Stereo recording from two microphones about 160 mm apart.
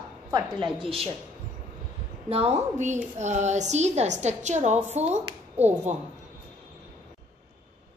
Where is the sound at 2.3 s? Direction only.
45° right (ahead or behind).